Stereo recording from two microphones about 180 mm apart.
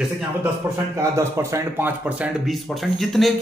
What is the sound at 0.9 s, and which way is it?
Speech, 15° right (ahead or behind).